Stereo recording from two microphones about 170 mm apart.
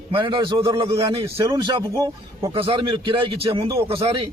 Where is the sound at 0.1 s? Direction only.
30° right (ahead or behind).